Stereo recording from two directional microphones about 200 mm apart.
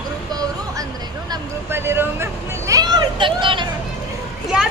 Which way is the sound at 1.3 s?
10° right (ahead or behind).